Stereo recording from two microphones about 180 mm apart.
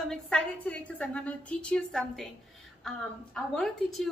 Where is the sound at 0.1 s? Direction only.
5° left (ahead or behind).